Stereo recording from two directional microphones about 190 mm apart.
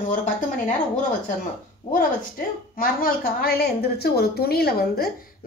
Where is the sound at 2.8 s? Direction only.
50° left (ahead or behind).